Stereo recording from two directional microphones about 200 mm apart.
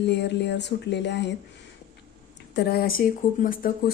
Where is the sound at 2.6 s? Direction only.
50° left (ahead or behind).